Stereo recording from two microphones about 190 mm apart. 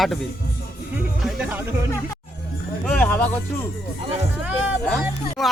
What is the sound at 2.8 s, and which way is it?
Music, 5° left (ahead or behind).